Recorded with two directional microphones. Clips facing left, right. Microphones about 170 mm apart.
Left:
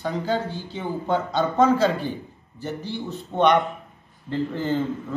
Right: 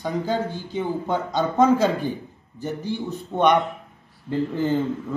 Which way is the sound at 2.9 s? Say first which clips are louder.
Right 3 dB; 15° right (ahead or behind).